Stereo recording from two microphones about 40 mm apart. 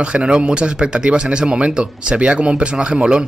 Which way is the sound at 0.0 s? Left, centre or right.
Right.